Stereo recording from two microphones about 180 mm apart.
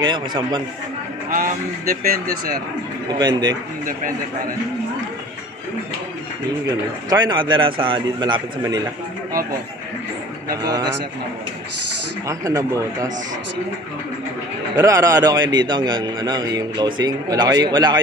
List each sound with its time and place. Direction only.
0.0 s a man's voice: 25° right (ahead or behind)
1.3 s speech: 50° right (ahead or behind)
3.2 s a man's voice: 25° right (ahead or behind)
6.7 s a man's voice: 20° right (ahead or behind)
10.6 s a man's voice: 20° right (ahead or behind)
12.3 s a man's voice: 20° right (ahead or behind)
14.8 s a man's voice: 20° right (ahead or behind)